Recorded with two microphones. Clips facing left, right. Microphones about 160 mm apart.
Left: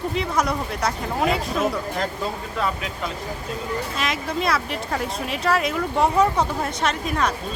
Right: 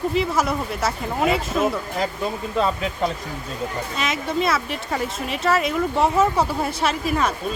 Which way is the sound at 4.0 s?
Centre (ahead or behind).